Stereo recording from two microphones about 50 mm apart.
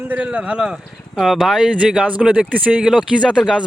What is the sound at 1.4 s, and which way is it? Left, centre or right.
Speech, centre.